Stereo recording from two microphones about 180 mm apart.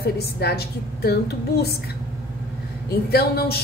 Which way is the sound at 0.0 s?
60° left (ahead or behind).